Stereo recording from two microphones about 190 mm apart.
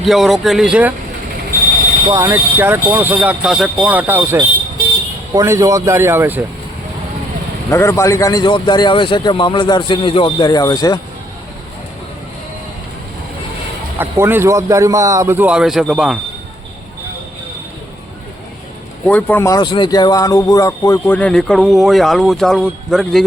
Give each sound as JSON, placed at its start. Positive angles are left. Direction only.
{"t": 0.0, "sound": "speech", "side_deg": 0}
{"t": 2.0, "sound": "speech", "side_deg": -15}
{"t": 7.7, "sound": "a man's voice", "side_deg": 15}
{"t": 14.0, "sound": "speech", "side_deg": -10}
{"t": 19.0, "sound": "speech", "side_deg": 10}
{"t": 21.2, "sound": "speech", "side_deg": 5}